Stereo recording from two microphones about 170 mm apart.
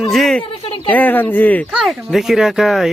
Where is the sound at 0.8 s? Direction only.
10° left (ahead or behind).